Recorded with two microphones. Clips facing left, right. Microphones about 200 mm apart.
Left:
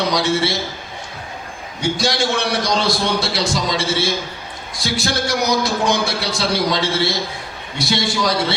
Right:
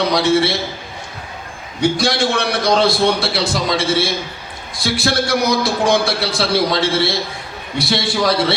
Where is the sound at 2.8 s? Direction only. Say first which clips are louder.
Right 4 dB; 60° right (ahead or behind).